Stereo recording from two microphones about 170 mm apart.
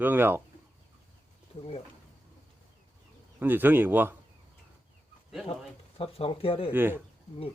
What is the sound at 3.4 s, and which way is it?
Speech, 10° right (ahead or behind).